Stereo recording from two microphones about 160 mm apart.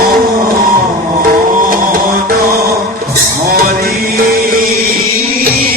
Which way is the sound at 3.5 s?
65° right (ahead or behind).